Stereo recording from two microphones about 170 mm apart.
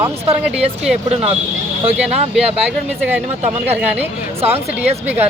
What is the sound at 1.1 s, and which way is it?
Speech, 35° right (ahead or behind).